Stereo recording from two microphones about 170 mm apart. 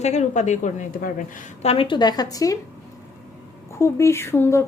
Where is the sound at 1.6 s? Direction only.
35° left (ahead or behind).